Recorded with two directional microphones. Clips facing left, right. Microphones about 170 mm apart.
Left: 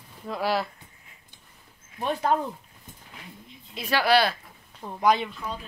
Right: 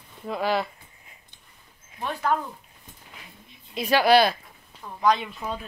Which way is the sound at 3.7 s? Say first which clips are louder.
Right 4 dB; 15° right (ahead or behind).